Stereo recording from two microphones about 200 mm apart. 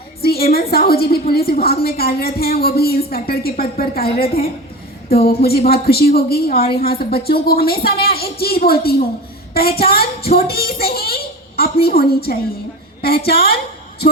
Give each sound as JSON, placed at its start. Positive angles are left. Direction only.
{"t": 0.2, "sound": "a sound", "side_deg": 50}
{"t": 0.5, "sound": "a woman's voice", "side_deg": 50}
{"t": 5.2, "sound": "a woman's voice", "side_deg": 50}